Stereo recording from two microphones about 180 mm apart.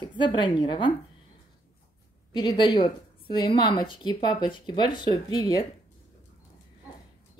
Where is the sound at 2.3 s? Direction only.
25° left (ahead or behind).